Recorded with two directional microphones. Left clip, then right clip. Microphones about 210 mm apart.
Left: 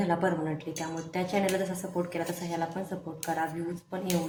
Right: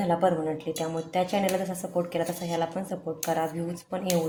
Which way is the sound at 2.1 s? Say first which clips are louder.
Right 5 dB; 30° right (ahead or behind).